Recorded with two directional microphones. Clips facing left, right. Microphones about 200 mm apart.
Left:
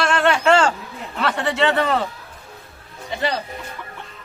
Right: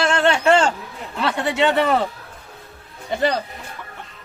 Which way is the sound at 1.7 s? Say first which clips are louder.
Right 2 dB; 15° right (ahead or behind).